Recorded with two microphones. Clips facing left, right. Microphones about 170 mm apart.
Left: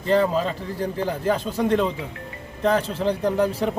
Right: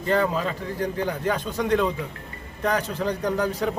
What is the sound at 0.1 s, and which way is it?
A man's voice, 30° left (ahead or behind).